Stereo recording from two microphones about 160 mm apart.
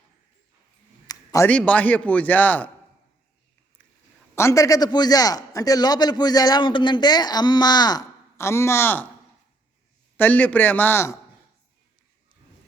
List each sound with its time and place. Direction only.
1.0 s a sound: 20° left (ahead or behind)
1.5 s speech: 10° left (ahead or behind)
4.4 s a man's voice: 20° left (ahead or behind)
10.2 s speech: 10° left (ahead or behind)